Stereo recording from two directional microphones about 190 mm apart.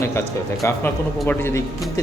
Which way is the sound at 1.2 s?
10° left (ahead or behind).